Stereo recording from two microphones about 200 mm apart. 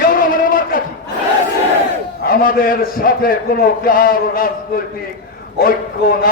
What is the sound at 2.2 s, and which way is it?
Mantra, 45° left (ahead or behind).